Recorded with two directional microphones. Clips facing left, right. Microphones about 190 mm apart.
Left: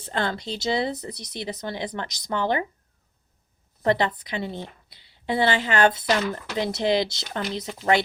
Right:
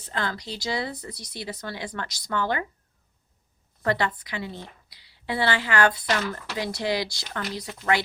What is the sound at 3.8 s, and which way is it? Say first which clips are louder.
Speech: left 3 dB; 20° left (ahead or behind).